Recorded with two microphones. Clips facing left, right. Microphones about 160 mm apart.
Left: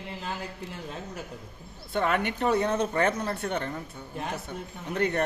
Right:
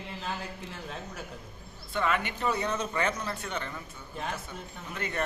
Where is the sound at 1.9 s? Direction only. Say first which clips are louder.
Left 3 dB; 60° left (ahead or behind).